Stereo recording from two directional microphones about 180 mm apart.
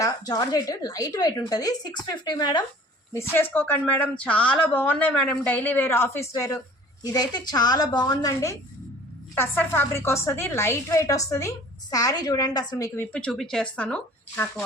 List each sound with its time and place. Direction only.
0.0 s a woman's voice: 20° left (ahead or behind)
13.1 s a woman's voice: 5° left (ahead or behind)